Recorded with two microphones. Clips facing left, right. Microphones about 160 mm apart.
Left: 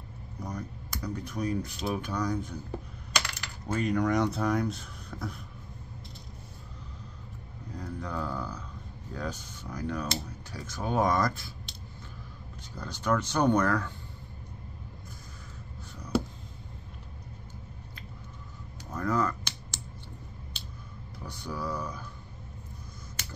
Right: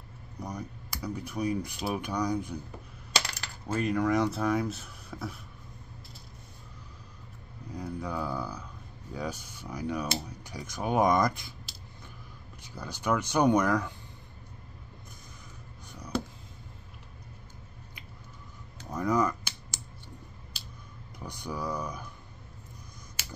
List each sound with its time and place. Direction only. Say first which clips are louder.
0.4 s speech: even; 10° right (ahead or behind)
3.6 s speech: even; 5° right (ahead or behind)
7.7 s mantra: right 1 dB; 10° right (ahead or behind)
9.1 s speech: right 1 dB; 10° right (ahead or behind)
12.7 s speech: left 1 dB; 10° right (ahead or behind)
16.1 s a sound: left 4 dB; 5° left (ahead or behind)
18.9 s a sound: right 2 dB; 15° right (ahead or behind)
21.3 s speech: even; 15° right (ahead or behind)